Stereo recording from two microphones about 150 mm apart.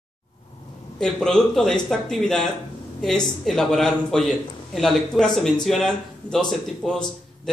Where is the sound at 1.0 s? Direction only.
5° left (ahead or behind).